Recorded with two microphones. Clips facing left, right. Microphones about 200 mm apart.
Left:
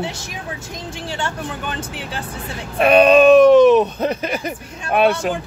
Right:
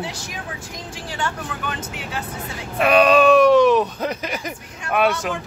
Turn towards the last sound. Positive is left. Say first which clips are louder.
# left 4 dB
turn(degrees=30)  # may be behind; listen again after turning